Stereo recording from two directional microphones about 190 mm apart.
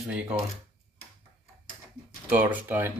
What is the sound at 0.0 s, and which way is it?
Speech, 5° right (ahead or behind).